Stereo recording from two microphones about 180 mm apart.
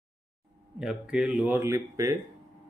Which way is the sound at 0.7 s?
5° right (ahead or behind).